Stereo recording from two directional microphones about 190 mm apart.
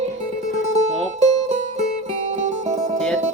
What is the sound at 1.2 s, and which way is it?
Music, 35° right (ahead or behind).